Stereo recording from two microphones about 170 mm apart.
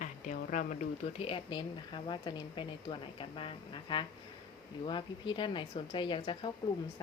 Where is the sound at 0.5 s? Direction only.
45° left (ahead or behind).